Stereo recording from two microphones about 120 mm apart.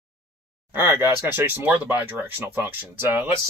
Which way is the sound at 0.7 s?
20° right (ahead or behind).